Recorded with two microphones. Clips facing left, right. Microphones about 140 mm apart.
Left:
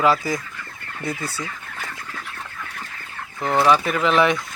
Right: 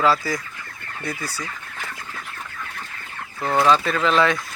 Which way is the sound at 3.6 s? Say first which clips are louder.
Even; 15° left (ahead or behind).